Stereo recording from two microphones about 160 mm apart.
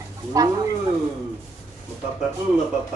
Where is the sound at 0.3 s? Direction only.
20° right (ahead or behind).